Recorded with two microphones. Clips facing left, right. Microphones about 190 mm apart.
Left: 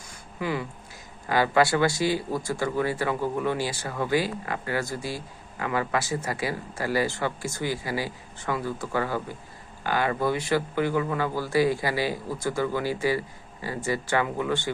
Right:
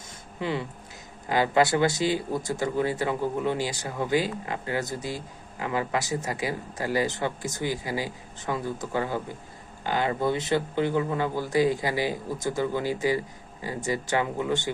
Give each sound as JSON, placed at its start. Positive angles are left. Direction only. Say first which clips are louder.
{"t": 0.3, "sound": "speech", "louder": "even", "side_deg": -25}